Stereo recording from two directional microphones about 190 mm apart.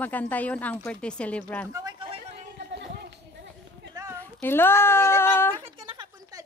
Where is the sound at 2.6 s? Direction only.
60° right (ahead or behind).